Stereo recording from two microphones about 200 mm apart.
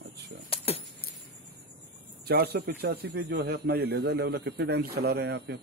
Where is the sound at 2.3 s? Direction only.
55° right (ahead or behind).